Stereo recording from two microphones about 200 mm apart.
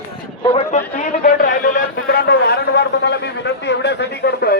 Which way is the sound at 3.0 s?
60° left (ahead or behind).